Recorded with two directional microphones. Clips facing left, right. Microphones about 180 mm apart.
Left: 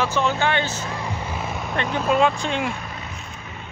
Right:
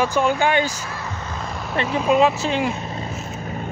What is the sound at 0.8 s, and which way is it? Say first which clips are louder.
Vehicle: left 2 dB; 15° left (ahead or behind).